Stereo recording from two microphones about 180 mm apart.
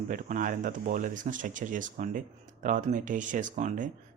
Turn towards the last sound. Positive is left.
turn(degrees=-45)  # may be behind; listen again after turning